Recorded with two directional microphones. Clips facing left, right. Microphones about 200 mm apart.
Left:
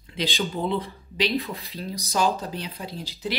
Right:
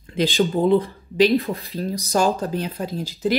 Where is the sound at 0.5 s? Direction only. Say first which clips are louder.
Right 9 dB; 50° right (ahead or behind).